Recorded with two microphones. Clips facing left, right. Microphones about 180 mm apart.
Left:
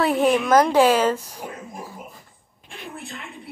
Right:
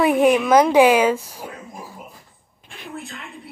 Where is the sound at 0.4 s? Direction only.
Centre (ahead or behind).